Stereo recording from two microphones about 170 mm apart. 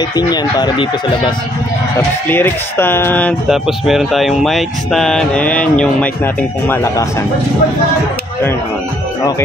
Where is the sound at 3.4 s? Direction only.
Centre (ahead or behind); by 7.2 s 15° left (ahead or behind).